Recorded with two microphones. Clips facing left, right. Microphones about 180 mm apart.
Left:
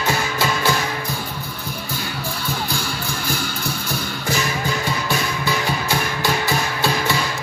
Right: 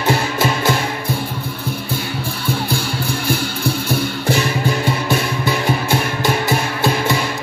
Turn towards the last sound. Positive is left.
turn(degrees=-20)  # may be behind; listen again after turning